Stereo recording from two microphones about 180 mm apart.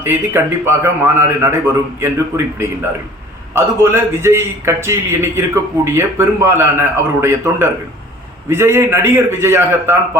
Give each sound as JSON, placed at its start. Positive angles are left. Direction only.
{"t": 0.0, "sound": "a man's voice", "side_deg": -15}